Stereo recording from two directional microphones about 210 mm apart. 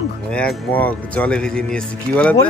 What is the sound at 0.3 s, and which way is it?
Speech, 5° left (ahead or behind).